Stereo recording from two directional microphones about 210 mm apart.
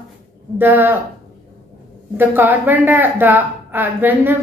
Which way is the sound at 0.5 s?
10° right (ahead or behind).